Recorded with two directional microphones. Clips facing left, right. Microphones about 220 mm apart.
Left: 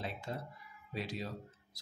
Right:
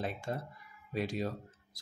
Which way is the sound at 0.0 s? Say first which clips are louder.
Right 4 dB; 50° right (ahead or behind).